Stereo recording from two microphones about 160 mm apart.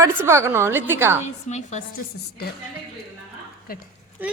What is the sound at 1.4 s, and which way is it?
Speech, 45° left (ahead or behind).